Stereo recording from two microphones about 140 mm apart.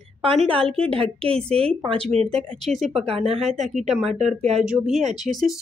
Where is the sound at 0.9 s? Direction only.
40° right (ahead or behind).